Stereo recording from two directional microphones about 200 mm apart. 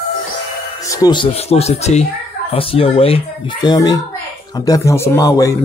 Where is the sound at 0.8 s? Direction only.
20° left (ahead or behind).